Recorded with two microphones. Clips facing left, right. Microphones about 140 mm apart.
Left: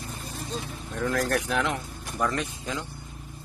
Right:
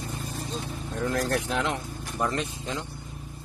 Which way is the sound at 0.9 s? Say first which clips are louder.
Left 1 dB; 20° right (ahead or behind).